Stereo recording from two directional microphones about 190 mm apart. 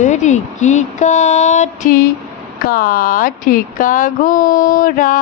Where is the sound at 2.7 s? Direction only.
50° left (ahead or behind).